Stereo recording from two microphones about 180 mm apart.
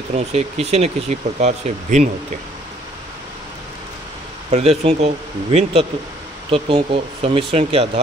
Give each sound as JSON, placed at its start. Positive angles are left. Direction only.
{"t": 0.1, "sound": "speech", "side_deg": -35}
{"t": 4.5, "sound": "speech", "side_deg": -35}